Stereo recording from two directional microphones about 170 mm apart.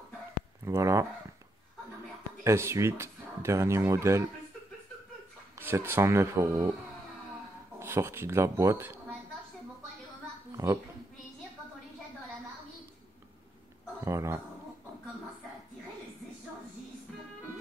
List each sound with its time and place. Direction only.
0.7 s speech: 15° right (ahead or behind)
2.4 s speech: 15° right (ahead or behind)
5.6 s speech: 15° right (ahead or behind)
7.8 s speech: 15° right (ahead or behind)
10.5 s a sound: 20° right (ahead or behind)
14.0 s speech: 15° right (ahead or behind)